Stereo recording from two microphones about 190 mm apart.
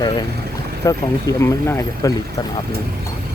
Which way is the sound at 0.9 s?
15° left (ahead or behind).